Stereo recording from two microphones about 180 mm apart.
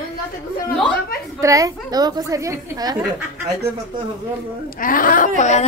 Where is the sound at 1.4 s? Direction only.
20° right (ahead or behind).